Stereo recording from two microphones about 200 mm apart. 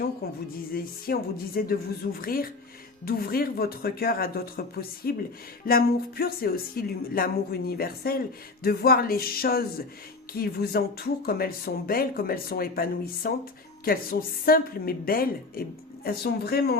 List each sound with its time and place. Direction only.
0.7 s speech: 50° left (ahead or behind)